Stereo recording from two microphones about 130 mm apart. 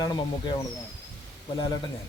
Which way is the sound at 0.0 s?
30° left (ahead or behind).